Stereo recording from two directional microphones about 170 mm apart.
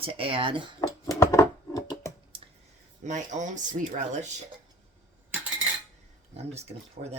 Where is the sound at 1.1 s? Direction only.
20° left (ahead or behind).